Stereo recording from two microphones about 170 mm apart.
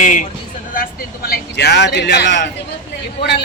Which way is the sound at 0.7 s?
60° left (ahead or behind).